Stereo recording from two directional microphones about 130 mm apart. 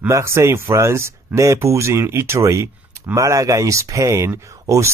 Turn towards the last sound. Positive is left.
turn(degrees=-25)  # may be behind; listen again after turning